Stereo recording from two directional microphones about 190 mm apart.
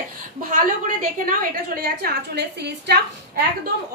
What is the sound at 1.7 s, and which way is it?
A woman's voice, 55° right (ahead or behind).